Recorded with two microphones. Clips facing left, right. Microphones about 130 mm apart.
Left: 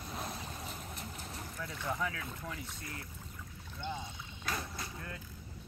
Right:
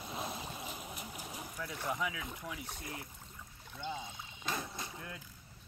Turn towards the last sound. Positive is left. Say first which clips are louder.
# left 1 dB
turn(degrees=-15)  # may be behind; listen again after turning